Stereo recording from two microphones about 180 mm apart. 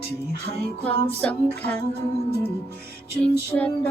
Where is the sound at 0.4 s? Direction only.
10° left (ahead or behind).